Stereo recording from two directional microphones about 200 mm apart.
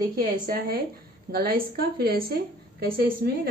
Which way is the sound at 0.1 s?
45° right (ahead or behind).